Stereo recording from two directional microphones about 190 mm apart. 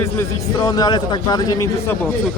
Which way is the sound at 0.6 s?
20° left (ahead or behind).